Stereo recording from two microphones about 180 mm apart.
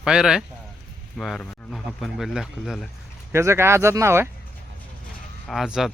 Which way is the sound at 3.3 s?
15° right (ahead or behind).